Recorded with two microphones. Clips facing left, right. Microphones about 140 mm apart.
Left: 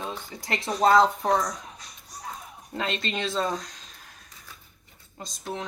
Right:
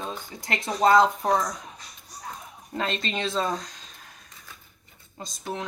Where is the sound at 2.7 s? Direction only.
Centre (ahead or behind).